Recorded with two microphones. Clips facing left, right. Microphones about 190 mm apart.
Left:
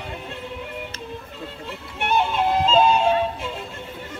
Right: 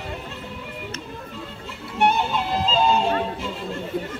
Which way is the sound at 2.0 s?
55° left (ahead or behind).